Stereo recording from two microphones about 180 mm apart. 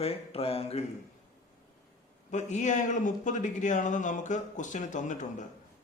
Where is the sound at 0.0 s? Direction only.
35° left (ahead or behind).